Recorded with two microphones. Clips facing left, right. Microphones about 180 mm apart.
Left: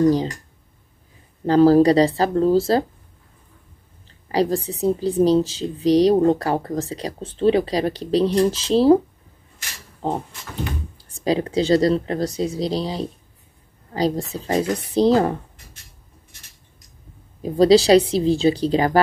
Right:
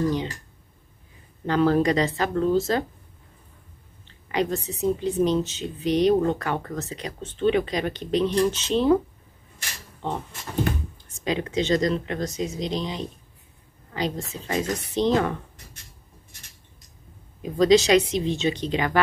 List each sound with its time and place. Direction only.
1.4 s speech: 35° left (ahead or behind)
4.0 s speech: 35° left (ahead or behind)
10.0 s speech: 35° left (ahead or behind)
17.4 s speech: 35° left (ahead or behind)